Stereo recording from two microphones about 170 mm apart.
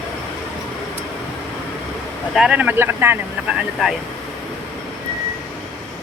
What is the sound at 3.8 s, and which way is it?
Speech, centre (ahead or behind).